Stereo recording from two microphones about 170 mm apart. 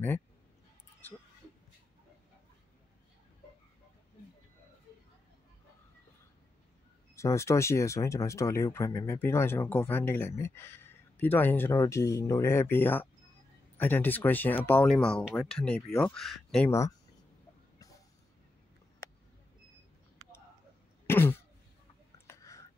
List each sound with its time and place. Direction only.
7.2 s speech: 15° left (ahead or behind)
21.1 s throat clearing: 10° left (ahead or behind)
22.3 s a sound: 20° left (ahead or behind)